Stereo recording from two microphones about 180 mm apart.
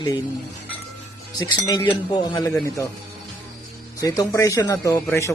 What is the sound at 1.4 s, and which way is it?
A man's voice, 20° left (ahead or behind).